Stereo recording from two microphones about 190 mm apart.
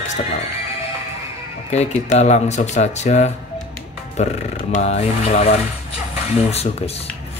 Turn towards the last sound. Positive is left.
turn(degrees=35)  # may be behind; listen again after turning